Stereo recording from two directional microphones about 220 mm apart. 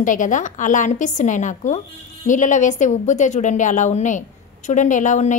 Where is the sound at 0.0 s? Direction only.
35° left (ahead or behind).